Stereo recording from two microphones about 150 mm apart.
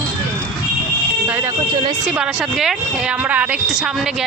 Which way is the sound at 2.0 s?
5° right (ahead or behind).